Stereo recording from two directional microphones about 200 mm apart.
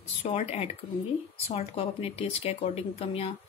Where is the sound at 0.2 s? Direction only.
30° left (ahead or behind).